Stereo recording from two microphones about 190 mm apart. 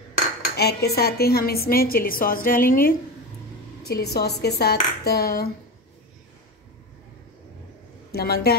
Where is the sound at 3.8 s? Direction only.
55° left (ahead or behind).